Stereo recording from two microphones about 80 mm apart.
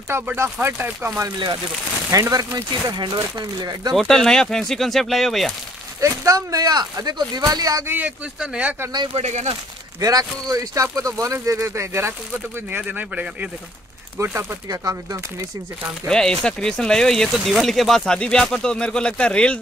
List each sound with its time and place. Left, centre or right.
0.4 s speech: right
2.0 s speech: right
2.7 s speech: right
3.9 s speech: centre
5.9 s speech: right
7.8 s speech: right
8.4 s speech: centre
9.9 s speech: right
12.7 s speech: centre
14.1 s speech: right
14.7 s speech: right
16.1 s speech: centre